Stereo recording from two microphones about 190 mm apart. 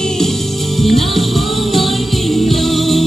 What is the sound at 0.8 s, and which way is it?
Music, centre (ahead or behind).